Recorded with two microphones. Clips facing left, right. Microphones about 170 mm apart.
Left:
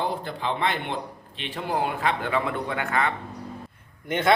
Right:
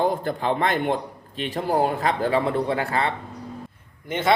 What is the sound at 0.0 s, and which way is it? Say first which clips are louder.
A man's voice: right 5 dB; 45° right (ahead or behind).